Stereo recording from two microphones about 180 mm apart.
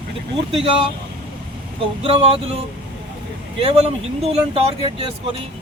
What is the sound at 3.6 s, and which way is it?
Speech, 35° right (ahead or behind).